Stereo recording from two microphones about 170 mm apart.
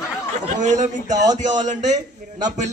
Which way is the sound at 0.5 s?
45° right (ahead or behind).